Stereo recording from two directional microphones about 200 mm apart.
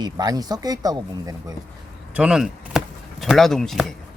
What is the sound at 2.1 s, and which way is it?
Speech, 5° right (ahead or behind).